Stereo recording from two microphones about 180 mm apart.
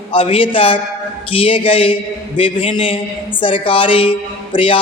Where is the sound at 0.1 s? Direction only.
30° left (ahead or behind).